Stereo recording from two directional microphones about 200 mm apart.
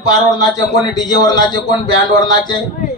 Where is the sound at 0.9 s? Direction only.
20° left (ahead or behind).